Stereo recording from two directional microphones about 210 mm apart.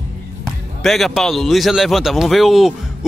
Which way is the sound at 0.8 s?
Centre (ahead or behind).